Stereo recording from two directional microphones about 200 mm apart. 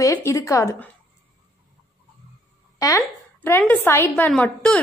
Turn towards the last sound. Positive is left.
turn(degrees=5)  # may be behind; listen again after turning